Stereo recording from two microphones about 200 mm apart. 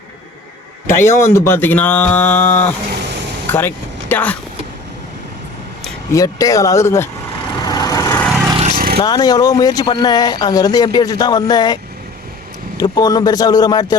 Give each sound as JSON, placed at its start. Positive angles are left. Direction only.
{"t": 0.9, "sound": "speech", "side_deg": 15}
{"t": 6.1, "sound": "speech", "side_deg": 15}
{"t": 7.5, "sound": "vehicle", "side_deg": 20}
{"t": 8.7, "sound": "vehicle", "side_deg": -50}
{"t": 9.0, "sound": "speech", "side_deg": 20}